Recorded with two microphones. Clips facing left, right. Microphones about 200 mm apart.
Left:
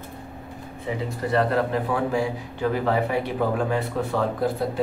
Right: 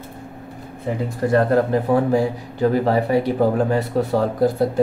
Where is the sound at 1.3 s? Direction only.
45° right (ahead or behind).